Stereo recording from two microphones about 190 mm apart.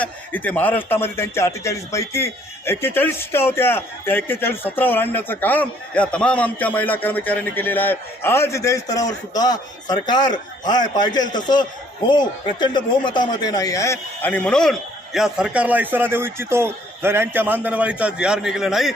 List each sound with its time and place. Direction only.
0.0 s a man's voice: 10° left (ahead or behind)